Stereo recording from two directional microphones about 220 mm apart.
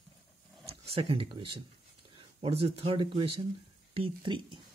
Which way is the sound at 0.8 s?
25° right (ahead or behind).